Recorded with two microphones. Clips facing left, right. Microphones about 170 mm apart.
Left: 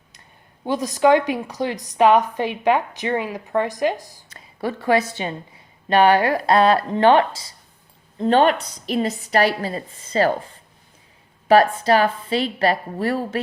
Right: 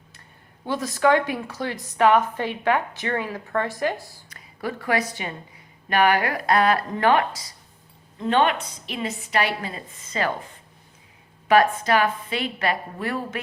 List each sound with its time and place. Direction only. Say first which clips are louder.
0.6 s a woman's voice: left 4 dB; 20° left (ahead or behind)
4.4 s a woman's voice: left 4 dB; 30° left (ahead or behind)